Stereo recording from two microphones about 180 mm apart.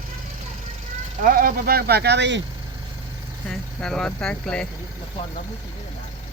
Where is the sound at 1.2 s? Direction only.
50° right (ahead or behind); by 2.4 s 75° right (ahead or behind).